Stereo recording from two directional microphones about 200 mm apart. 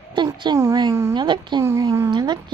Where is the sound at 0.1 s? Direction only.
20° right (ahead or behind).